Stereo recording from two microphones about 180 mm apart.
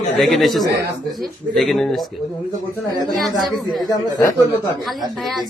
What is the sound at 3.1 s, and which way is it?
Speech, centre (ahead or behind).